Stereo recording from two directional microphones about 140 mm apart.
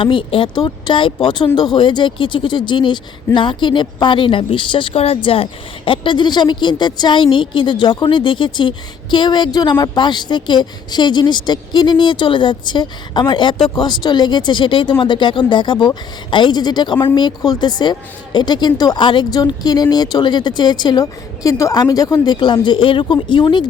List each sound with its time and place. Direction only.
0.0 s a woman's voice: 35° left (ahead or behind)